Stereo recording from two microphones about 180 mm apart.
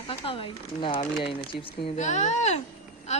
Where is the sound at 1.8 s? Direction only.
40° left (ahead or behind).